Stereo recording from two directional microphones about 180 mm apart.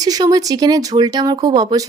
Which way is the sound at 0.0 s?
20° right (ahead or behind).